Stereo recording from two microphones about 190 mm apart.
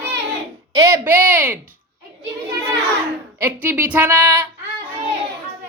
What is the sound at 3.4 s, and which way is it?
Speech, 10° right (ahead or behind).